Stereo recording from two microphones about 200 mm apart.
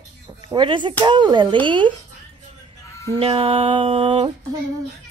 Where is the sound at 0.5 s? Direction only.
25° right (ahead or behind).